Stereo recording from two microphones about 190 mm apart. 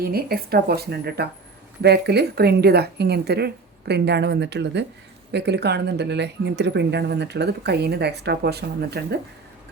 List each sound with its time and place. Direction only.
0.0 s speech: 55° right (ahead or behind)